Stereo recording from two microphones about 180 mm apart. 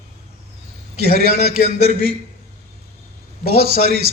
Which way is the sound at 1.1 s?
60° right (ahead or behind).